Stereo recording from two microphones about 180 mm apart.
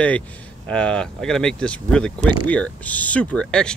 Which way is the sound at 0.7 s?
5° left (ahead or behind).